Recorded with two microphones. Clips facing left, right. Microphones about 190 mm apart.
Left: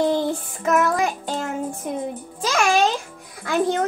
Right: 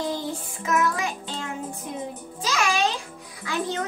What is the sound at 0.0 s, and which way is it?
Music, 60° left (ahead or behind).